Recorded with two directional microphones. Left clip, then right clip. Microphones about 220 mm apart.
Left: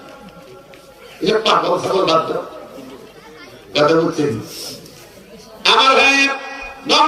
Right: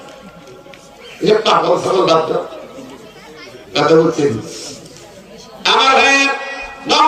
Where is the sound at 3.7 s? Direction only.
20° left (ahead or behind).